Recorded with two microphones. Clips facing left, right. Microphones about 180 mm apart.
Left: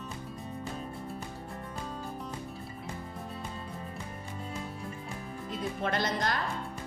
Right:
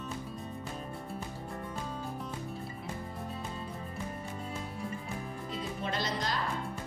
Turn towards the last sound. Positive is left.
turn(degrees=55)  # may be behind; listen again after turning